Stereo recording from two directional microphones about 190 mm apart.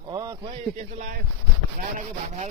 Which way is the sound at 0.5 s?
35° right (ahead or behind).